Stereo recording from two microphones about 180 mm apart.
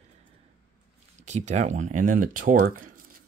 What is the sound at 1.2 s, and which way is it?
Speech, 40° right (ahead or behind).